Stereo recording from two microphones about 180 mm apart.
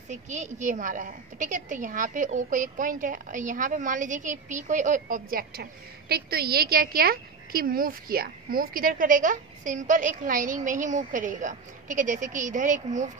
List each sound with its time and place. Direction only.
0.1 s a woman's voice: 40° right (ahead or behind)